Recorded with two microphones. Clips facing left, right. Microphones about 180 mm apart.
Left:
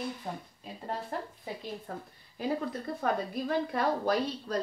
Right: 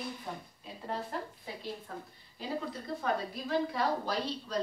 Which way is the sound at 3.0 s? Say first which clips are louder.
Left 3 dB; 55° left (ahead or behind).